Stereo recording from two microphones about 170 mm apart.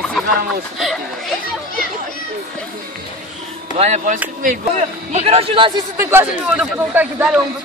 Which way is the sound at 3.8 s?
40° right (ahead or behind).